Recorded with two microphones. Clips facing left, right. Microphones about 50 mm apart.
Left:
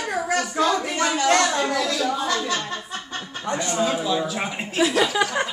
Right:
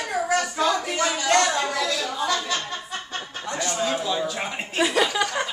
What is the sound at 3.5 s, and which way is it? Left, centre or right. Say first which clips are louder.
Speech: left 3 dB; left.